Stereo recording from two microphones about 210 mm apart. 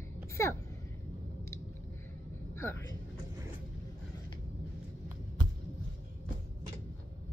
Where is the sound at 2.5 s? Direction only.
10° left (ahead or behind).